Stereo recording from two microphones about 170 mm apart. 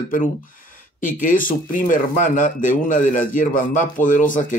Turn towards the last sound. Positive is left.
turn(degrees=50)  # may be behind; listen again after turning